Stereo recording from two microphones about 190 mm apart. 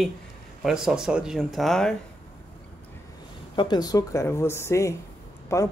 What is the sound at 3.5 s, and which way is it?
Speech, 25° left (ahead or behind).